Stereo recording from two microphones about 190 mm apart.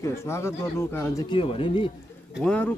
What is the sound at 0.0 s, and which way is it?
Speech, 15° left (ahead or behind).